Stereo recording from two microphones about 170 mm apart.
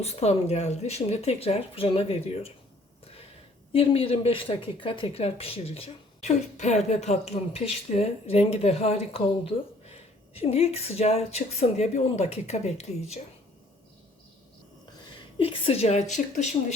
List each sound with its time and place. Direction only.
0.0 s speech: 40° left (ahead or behind)
3.7 s speech: 35° left (ahead or behind)
15.4 s speech: 35° left (ahead or behind)